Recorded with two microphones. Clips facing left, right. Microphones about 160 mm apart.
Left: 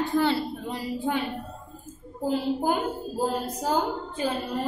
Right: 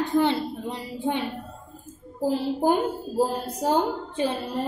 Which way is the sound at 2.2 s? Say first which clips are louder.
Right 2 dB; 30° right (ahead or behind).